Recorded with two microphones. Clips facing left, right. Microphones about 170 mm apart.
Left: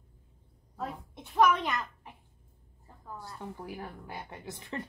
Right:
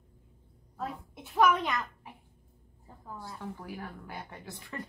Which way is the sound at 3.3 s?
15° left (ahead or behind).